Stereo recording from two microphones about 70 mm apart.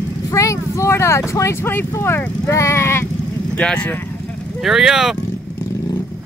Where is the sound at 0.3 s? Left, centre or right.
Left.